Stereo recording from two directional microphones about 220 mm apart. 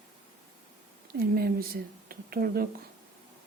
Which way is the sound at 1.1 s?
45° right (ahead or behind).